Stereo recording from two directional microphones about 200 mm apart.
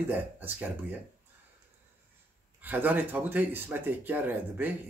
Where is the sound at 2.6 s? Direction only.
10° right (ahead or behind).